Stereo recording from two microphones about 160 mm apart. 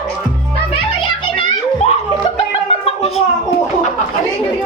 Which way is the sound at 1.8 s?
40° left (ahead or behind).